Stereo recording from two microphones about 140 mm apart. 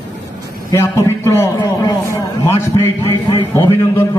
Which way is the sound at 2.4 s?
20° left (ahead or behind).